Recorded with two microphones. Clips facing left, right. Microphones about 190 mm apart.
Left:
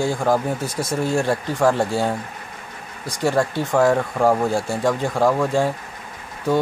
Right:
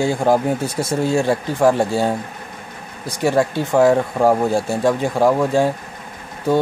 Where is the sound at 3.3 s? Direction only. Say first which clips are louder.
Right 4 dB; 5° right (ahead or behind).